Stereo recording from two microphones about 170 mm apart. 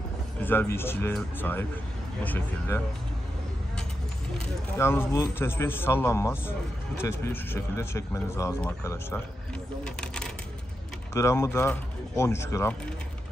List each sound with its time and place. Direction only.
0.4 s speech: 10° left (ahead or behind)
4.7 s speech: 15° left (ahead or behind)
11.1 s speech: 15° left (ahead or behind)